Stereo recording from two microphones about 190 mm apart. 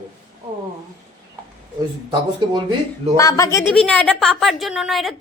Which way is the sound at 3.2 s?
15° left (ahead or behind).